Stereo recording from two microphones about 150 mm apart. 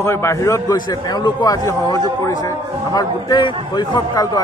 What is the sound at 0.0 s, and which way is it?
A man's voice, 15° left (ahead or behind).